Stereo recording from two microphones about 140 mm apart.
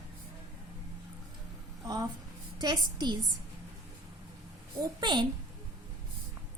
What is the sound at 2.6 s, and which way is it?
Speech, 30° right (ahead or behind).